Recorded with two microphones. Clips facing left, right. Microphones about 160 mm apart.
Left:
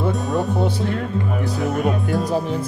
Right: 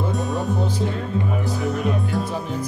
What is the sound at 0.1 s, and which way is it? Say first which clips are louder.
Music: left 3 dB; centre (ahead or behind).